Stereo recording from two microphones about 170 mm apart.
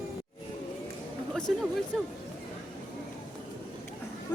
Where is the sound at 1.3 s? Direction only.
5° left (ahead or behind).